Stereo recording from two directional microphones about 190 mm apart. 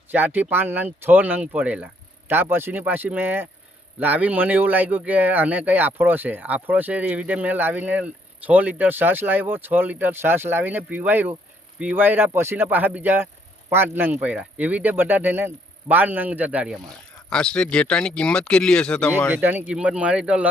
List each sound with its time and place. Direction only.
0.1 s speech: 10° right (ahead or behind)
17.2 s speech: 5° left (ahead or behind)
19.0 s speech: 15° left (ahead or behind)
19.3 s speech: 10° right (ahead or behind)